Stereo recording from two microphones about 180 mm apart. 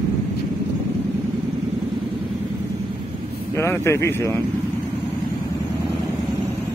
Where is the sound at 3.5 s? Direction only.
15° left (ahead or behind).